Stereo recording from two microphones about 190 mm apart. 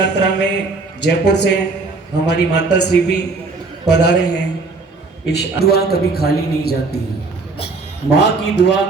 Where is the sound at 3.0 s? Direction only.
60° left (ahead or behind).